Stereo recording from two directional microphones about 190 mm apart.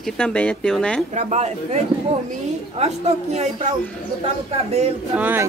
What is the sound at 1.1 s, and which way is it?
Speech, 35° right (ahead or behind).